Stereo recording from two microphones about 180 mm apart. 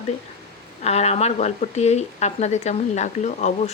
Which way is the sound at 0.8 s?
35° left (ahead or behind).